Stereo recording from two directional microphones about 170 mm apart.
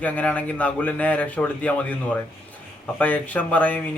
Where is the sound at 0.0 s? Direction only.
10° left (ahead or behind).